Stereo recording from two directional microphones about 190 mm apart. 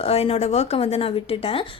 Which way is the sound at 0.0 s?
30° left (ahead or behind).